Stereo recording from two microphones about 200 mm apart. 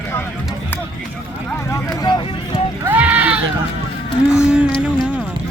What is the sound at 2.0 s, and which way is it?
Vehicle, 20° left (ahead or behind).